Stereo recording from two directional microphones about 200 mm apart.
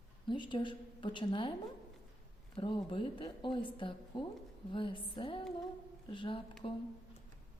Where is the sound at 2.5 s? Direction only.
25° left (ahead or behind).